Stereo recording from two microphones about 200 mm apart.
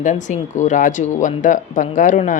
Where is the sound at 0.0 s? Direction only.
40° left (ahead or behind).